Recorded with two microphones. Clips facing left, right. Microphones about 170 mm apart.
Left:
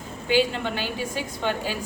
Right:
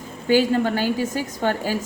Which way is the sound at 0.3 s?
45° right (ahead or behind).